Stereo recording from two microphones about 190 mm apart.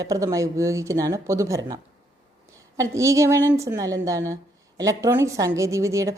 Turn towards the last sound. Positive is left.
turn(degrees=-15)  # may be behind; listen again after turning